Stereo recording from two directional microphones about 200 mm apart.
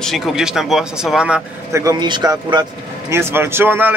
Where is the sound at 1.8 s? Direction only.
20° right (ahead or behind).